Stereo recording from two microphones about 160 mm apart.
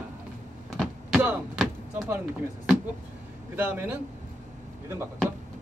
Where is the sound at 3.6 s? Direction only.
10° right (ahead or behind).